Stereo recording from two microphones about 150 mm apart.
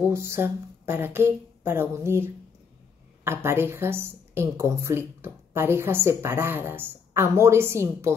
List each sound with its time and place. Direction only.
0.1 s speech: 20° right (ahead or behind)